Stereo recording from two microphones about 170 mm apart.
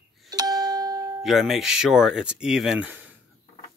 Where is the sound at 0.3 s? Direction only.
25° right (ahead or behind).